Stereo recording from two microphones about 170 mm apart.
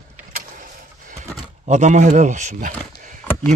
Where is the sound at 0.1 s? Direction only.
55° right (ahead or behind).